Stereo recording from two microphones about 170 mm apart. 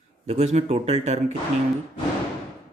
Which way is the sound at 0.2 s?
40° right (ahead or behind).